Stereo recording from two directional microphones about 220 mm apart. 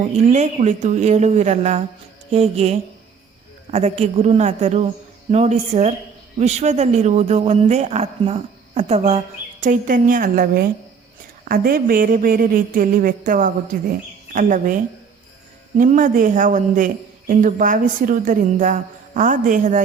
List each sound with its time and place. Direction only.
0.0 s a woman's voice: 30° right (ahead or behind)
15.8 s speech: 35° right (ahead or behind)